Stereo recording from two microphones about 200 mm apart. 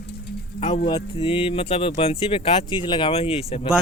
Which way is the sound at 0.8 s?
25° left (ahead or behind).